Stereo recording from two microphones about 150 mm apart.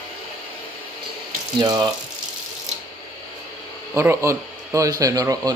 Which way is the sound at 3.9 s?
15° right (ahead or behind).